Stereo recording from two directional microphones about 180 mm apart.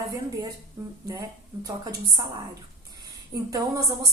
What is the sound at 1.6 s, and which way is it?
Speech, 20° right (ahead or behind).